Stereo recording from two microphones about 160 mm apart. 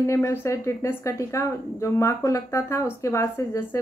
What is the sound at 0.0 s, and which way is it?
A woman's voice, 15° left (ahead or behind).